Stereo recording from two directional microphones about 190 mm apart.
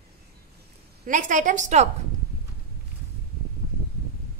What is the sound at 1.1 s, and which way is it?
Speech, 40° right (ahead or behind).